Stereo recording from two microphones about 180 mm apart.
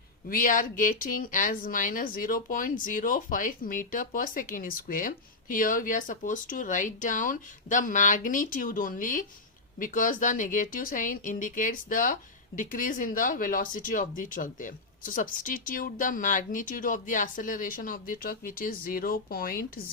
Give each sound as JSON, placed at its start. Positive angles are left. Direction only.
{"t": 0.3, "sound": "speech", "side_deg": 50}